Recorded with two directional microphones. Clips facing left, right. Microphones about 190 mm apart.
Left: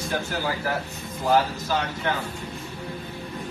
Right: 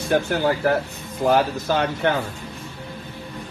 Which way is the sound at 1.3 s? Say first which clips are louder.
Right 3 dB; 60° right (ahead or behind).